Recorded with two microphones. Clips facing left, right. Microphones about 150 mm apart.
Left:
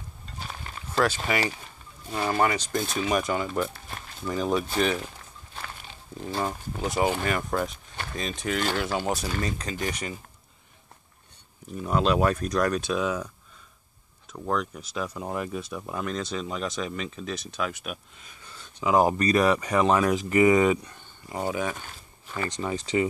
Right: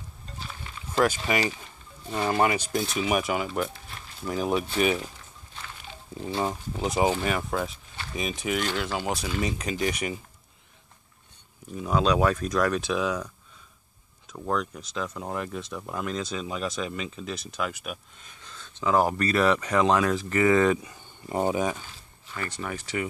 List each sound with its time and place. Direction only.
0.4 s a sound: 50° left (ahead or behind)
0.9 s speech: 15° right (ahead or behind)
6.2 s speech: 15° right (ahead or behind)
9.6 s speech: 10° right (ahead or behind)
11.7 s speech: centre (ahead or behind)
14.3 s speech: centre (ahead or behind)
21.5 s speech: 20° right (ahead or behind)
21.8 s a sound: 50° left (ahead or behind)
22.4 s speech: 20° left (ahead or behind)